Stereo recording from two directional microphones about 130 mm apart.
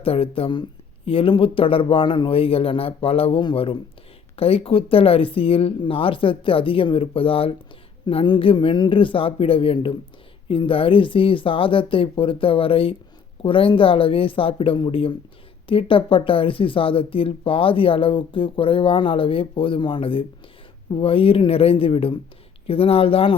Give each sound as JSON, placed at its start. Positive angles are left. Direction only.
{"t": 0.0, "sound": "speech", "side_deg": 45}